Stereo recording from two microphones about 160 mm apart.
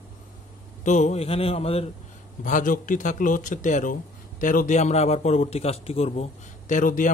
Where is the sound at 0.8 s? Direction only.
45° left (ahead or behind).